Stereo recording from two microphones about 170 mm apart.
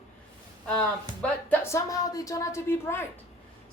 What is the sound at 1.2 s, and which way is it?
A woman's voice, 10° left (ahead or behind).